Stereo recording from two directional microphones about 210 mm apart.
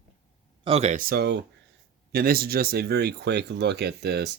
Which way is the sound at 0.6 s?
30° right (ahead or behind).